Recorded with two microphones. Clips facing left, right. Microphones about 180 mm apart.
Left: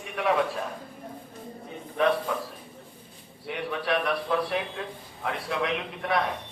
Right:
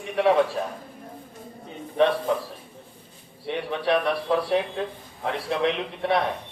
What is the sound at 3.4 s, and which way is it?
A man's voice, 30° right (ahead or behind).